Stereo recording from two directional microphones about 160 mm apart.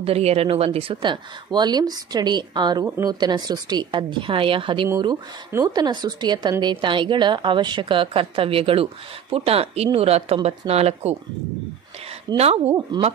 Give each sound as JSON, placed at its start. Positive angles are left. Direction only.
{"t": 0.0, "sound": "speech", "side_deg": -40}
{"t": 4.8, "sound": "a woman's voice", "side_deg": -20}
{"t": 12.3, "sound": "speech", "side_deg": -25}